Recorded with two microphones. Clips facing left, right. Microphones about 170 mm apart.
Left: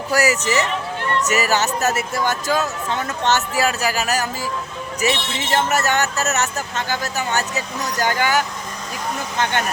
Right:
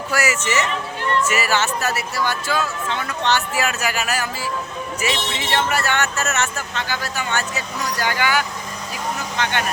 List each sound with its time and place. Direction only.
0.1 s speech: 35° left (ahead or behind)